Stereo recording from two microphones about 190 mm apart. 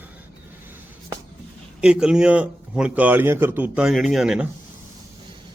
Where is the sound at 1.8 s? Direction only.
5° right (ahead or behind).